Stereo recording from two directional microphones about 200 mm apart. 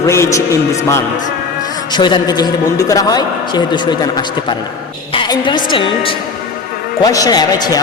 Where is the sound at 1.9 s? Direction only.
20° left (ahead or behind).